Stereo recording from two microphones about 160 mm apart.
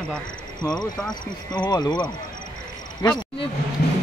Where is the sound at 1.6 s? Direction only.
25° left (ahead or behind).